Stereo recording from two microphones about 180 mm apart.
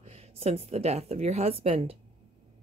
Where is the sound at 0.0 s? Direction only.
35° right (ahead or behind).